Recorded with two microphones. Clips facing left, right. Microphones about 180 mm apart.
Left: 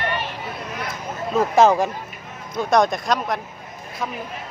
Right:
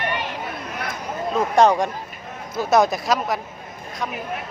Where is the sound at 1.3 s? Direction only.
5° left (ahead or behind).